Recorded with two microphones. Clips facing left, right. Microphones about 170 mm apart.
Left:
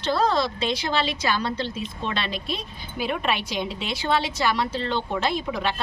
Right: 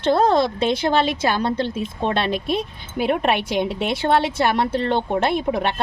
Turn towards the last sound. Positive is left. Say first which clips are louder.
# right 5 dB
turn(degrees=-60)  # may be behind; listen again after turning